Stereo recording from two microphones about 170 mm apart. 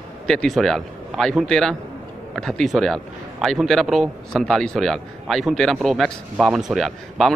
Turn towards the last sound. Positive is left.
turn(degrees=0)  # may be behind; listen again after turning